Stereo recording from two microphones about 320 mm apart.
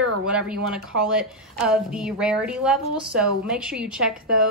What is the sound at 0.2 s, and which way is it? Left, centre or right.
A woman's voice, centre.